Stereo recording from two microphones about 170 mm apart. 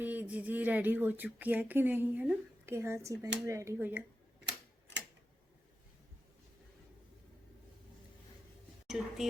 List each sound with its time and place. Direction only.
0.0 s speech: 10° right (ahead or behind)
8.9 s speech: centre (ahead or behind)